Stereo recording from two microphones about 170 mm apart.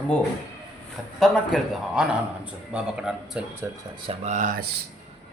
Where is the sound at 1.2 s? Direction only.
Centre (ahead or behind); by 3.8 s 15° right (ahead or behind).